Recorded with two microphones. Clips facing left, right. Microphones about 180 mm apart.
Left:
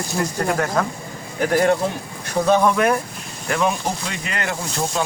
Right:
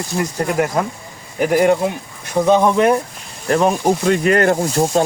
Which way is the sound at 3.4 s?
35° right (ahead or behind).